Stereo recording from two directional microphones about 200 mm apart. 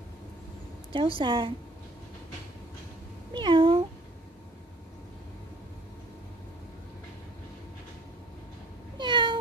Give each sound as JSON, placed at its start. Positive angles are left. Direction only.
{"t": 0.9, "sound": "a woman's voice", "side_deg": -25}
{"t": 3.3, "sound": "speech", "side_deg": -25}
{"t": 8.9, "sound": "cat", "side_deg": -20}